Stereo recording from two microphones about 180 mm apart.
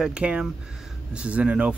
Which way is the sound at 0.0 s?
5° right (ahead or behind).